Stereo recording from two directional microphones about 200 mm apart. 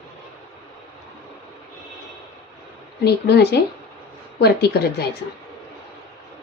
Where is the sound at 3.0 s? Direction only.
55° left (ahead or behind).